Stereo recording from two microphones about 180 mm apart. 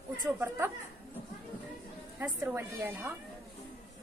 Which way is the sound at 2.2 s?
10° right (ahead or behind).